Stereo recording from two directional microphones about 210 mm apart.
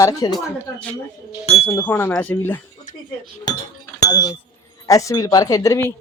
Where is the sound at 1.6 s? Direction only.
10° left (ahead or behind).